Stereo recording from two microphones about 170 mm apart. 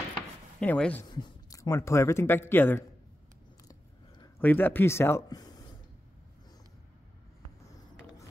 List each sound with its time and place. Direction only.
0.6 s speech: 5° left (ahead or behind)
1.0 s a man's voice: 25° left (ahead or behind)
4.4 s speech: 10° left (ahead or behind)